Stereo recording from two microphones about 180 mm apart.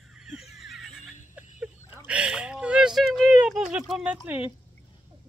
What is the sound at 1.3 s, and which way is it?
Fowl, 10° right (ahead or behind).